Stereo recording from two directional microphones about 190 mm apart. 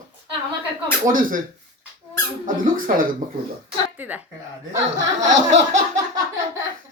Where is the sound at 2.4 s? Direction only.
45° right (ahead or behind).